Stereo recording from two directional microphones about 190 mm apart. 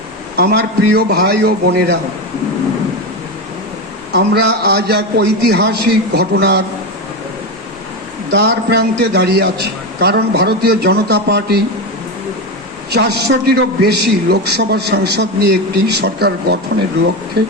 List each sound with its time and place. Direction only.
0.3 s a man's voice: 60° right (ahead or behind)
4.1 s a man's voice: 55° right (ahead or behind)
8.3 s a man's voice: 60° right (ahead or behind)
12.9 s a man's voice: 60° right (ahead or behind)